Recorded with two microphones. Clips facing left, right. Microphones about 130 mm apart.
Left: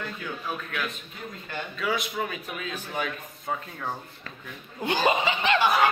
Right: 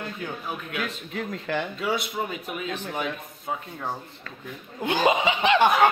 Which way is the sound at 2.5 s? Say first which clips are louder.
Right 2 dB; 10° right (ahead or behind).